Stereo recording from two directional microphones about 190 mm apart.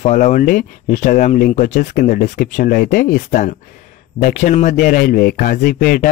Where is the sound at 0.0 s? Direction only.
40° left (ahead or behind).